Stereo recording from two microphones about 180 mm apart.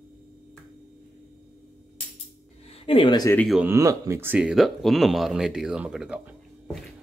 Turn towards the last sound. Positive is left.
turn(degrees=-5)  # may be behind; listen again after turning